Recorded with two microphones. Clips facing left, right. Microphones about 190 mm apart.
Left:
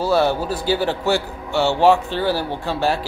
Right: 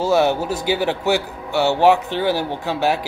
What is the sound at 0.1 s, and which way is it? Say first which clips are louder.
A man's voice: right 1 dB; 20° right (ahead or behind).